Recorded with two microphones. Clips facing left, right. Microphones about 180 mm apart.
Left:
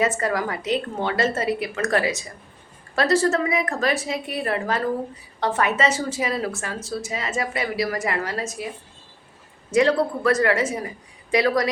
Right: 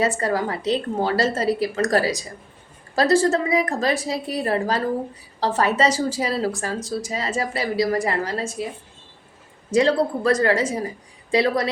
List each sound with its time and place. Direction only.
0.0 s a woman's voice: 30° right (ahead or behind)
9.7 s a woman's voice: 30° right (ahead or behind)